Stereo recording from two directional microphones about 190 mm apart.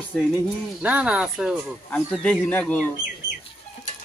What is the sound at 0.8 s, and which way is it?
Speech, 10° right (ahead or behind).